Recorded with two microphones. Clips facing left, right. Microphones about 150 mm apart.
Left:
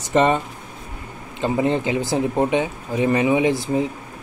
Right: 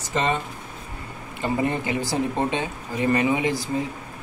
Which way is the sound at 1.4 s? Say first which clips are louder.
Left 4 dB; 20° left (ahead or behind).